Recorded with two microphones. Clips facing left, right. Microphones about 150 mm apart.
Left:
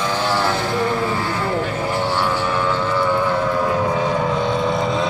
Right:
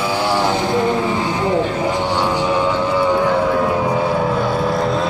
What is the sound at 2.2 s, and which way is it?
Vehicle, 15° right (ahead or behind).